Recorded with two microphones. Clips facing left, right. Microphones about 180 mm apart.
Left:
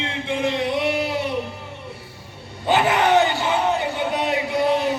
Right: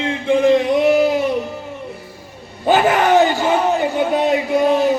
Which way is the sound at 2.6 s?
45° right (ahead or behind).